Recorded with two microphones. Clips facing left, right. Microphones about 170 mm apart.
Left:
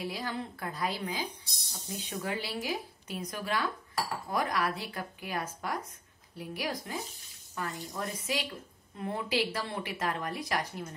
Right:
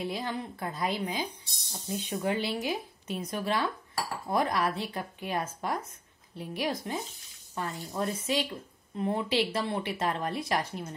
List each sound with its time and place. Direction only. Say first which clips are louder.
0.0 s cutlery: right 2 dB; 20° right (ahead or behind)